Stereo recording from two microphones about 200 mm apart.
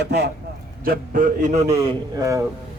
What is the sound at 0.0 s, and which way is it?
Speech, 55° right (ahead or behind).